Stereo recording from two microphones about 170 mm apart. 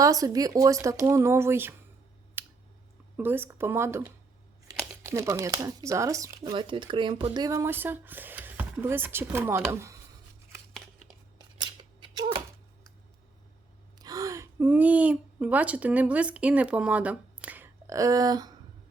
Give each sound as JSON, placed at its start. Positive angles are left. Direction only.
{"t": 0.0, "sound": "speech", "side_deg": -20}
{"t": 2.4, "sound": "a sound", "side_deg": -10}
{"t": 3.2, "sound": "speech", "side_deg": -10}
{"t": 7.3, "sound": "speech", "side_deg": -20}
{"t": 11.6, "sound": "scissors", "side_deg": -25}
{"t": 14.0, "sound": "speech", "side_deg": -20}